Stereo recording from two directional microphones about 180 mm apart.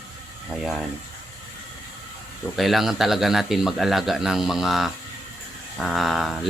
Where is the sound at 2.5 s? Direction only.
Centre (ahead or behind).